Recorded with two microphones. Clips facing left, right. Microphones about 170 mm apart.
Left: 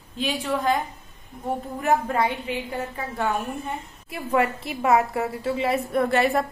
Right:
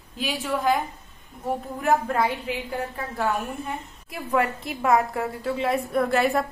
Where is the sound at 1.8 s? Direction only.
Centre (ahead or behind).